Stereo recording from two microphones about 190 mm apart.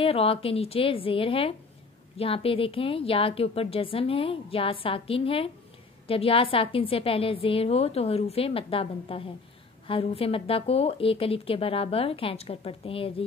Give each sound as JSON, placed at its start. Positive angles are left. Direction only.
{"t": 0.0, "sound": "a woman's voice", "side_deg": 30}